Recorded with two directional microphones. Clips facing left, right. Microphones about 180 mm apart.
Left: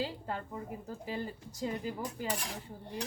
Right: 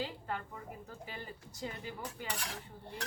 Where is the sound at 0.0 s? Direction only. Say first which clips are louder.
Left 3 dB; 35° left (ahead or behind).